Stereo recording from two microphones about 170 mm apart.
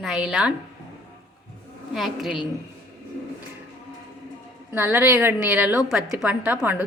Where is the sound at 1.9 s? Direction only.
Centre (ahead or behind).